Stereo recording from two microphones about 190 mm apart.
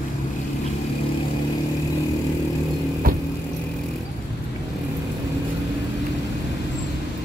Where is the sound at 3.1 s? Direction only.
50° right (ahead or behind).